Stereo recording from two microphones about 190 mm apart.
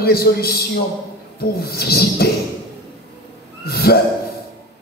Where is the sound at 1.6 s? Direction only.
55° left (ahead or behind).